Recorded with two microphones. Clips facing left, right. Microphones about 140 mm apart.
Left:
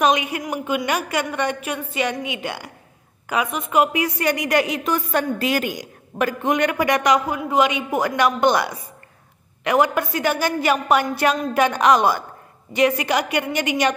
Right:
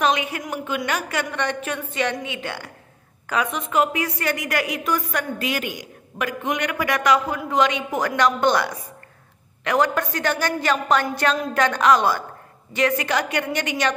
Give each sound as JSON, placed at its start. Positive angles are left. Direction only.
{"t": 0.0, "sound": "a woman's voice", "side_deg": 15}